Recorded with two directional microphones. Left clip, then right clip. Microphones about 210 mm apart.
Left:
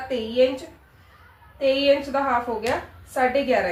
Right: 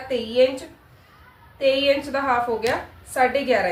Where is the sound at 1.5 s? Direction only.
20° right (ahead or behind).